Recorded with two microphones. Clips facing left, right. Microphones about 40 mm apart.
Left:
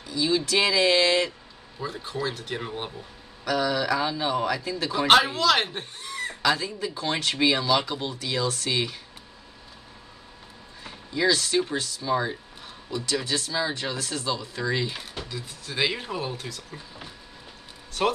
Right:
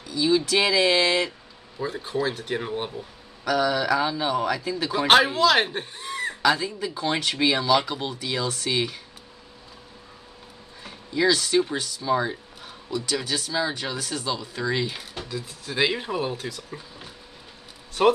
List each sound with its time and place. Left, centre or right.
0.1 s a man's voice: centre
3.4 s a man's voice: centre
6.0 s bleat: centre
6.4 s a man's voice: centre
10.8 s a sound: centre
11.7 s a man's voice: centre
15.7 s speech: centre